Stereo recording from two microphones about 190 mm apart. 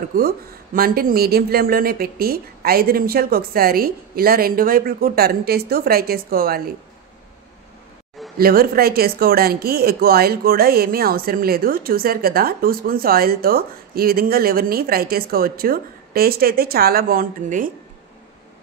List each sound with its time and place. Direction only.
0.7 s speech: 50° right (ahead or behind)
8.4 s speech: 50° right (ahead or behind)